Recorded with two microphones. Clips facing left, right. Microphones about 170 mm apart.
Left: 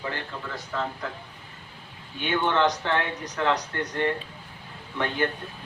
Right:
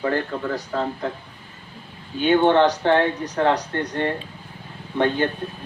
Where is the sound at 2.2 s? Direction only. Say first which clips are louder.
Right 8 dB; 35° right (ahead or behind).